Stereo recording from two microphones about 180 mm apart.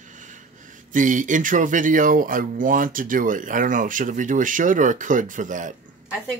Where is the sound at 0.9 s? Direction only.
45° right (ahead or behind).